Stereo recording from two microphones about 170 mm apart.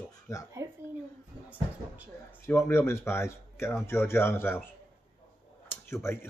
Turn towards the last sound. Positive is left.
turn(degrees=15)  # may be behind; listen again after turning